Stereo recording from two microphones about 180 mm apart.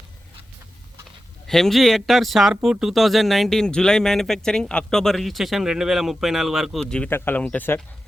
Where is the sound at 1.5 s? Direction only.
Centre (ahead or behind).